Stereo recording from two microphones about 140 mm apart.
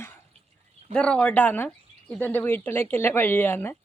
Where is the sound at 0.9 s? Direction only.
5° left (ahead or behind).